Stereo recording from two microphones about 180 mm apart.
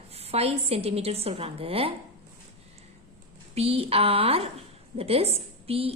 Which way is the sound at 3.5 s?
35° right (ahead or behind).